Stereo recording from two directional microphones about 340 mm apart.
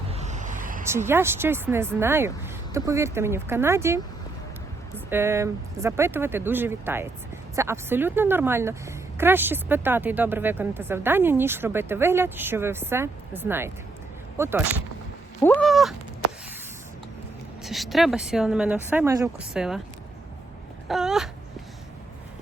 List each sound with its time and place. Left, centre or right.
0.1 s a sound: centre
0.9 s speech: centre
15.4 s speech: centre
17.6 s speech: centre
20.8 s wail: centre